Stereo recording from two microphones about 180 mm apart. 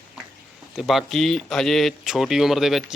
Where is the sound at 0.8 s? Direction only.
Centre (ahead or behind).